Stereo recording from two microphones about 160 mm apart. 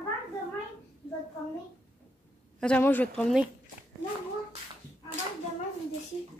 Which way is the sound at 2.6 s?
10° left (ahead or behind).